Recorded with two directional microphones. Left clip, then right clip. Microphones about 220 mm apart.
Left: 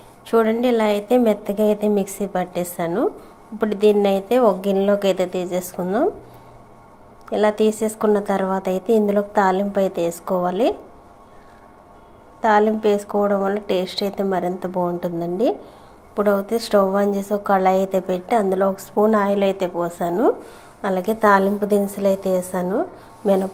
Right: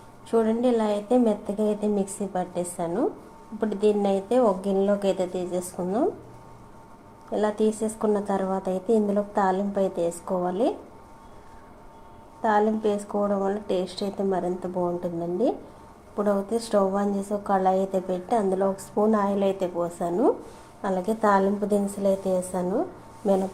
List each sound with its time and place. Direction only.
0.3 s a woman's voice: 20° left (ahead or behind)
7.3 s a woman's voice: 20° left (ahead or behind)
12.4 s a woman's voice: 20° left (ahead or behind)